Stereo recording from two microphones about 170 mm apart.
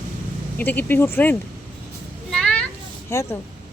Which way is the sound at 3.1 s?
15° left (ahead or behind).